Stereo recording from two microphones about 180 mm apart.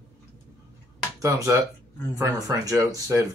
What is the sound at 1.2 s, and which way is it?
Speech, 15° right (ahead or behind).